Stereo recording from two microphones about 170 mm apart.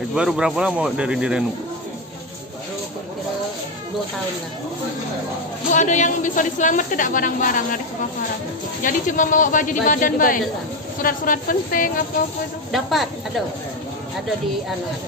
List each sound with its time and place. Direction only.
0.1 s speech: 5° right (ahead or behind)
5.7 s a woman's voice: 45° left (ahead or behind)
8.8 s a woman's voice: 50° left (ahead or behind)
12.7 s speech: centre (ahead or behind)